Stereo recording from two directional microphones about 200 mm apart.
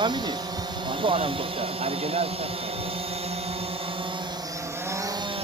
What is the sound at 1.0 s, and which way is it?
Speech, 30° right (ahead or behind).